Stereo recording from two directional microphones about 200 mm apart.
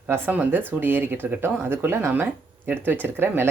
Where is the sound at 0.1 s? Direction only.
10° right (ahead or behind).